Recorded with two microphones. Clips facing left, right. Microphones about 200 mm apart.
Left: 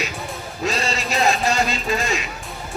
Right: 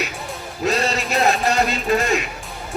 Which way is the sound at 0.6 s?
60° right (ahead or behind).